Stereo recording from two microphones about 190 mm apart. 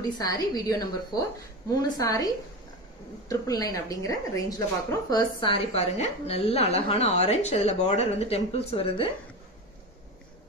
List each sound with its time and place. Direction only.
0.2 s a woman's voice: 20° left (ahead or behind)